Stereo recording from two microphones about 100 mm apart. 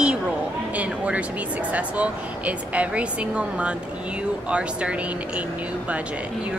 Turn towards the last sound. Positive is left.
turn(degrees=-15)  # may be behind; listen again after turning